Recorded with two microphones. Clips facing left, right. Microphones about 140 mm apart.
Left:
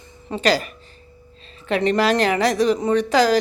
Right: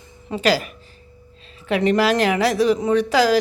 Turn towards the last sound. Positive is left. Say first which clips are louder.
# even
turn(degrees=-5)  # may be behind; listen again after turning